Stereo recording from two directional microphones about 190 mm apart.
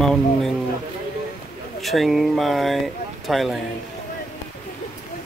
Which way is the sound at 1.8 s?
Centre (ahead or behind).